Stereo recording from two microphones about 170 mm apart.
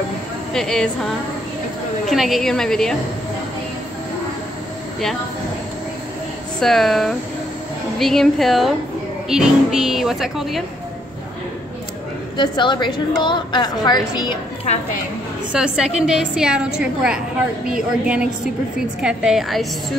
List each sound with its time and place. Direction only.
0.5 s speech: 5° left (ahead or behind)
6.6 s speech: centre (ahead or behind)
12.4 s a woman's voice: 25° left (ahead or behind)
15.5 s speech: 5° right (ahead or behind)